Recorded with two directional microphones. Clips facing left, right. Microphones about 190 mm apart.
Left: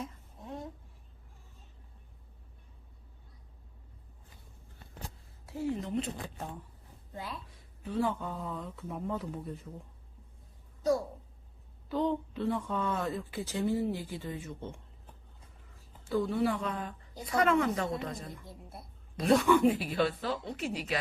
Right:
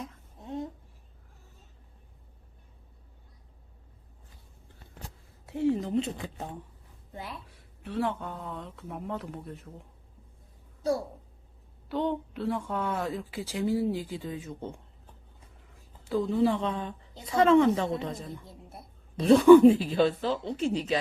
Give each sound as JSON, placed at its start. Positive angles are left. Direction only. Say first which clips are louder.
{"t": 5.5, "sound": "a woman's voice", "louder": "right 7 dB", "side_deg": -25}
{"t": 7.9, "sound": "speech", "louder": "right 1 dB", "side_deg": 0}
{"t": 11.9, "sound": "a woman's voice", "louder": "right 1 dB", "side_deg": 0}
{"t": 16.1, "sound": "a woman's voice", "louder": "right 4 dB", "side_deg": -25}
{"t": 19.1, "sound": "a woman's voice", "louder": "right 10 dB", "side_deg": -30}